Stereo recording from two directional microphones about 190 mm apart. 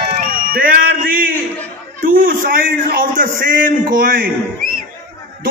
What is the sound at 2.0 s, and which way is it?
A man's voice, 50° right (ahead or behind).